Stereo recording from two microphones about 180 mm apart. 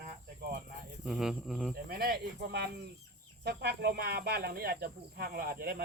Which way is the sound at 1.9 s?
60° right (ahead or behind).